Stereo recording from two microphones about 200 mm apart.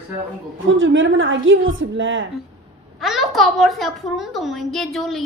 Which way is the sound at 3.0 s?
Centre (ahead or behind).